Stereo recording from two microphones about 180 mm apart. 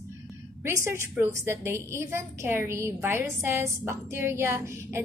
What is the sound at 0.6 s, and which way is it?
A woman's voice, 15° right (ahead or behind).